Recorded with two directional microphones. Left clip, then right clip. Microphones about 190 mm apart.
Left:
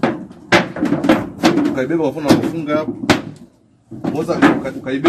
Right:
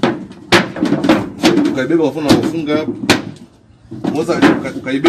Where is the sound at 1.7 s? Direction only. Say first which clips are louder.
Right 3 dB; centre (ahead or behind).